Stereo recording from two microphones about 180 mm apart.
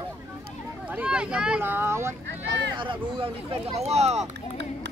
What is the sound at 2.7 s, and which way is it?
Speech, 25° right (ahead or behind).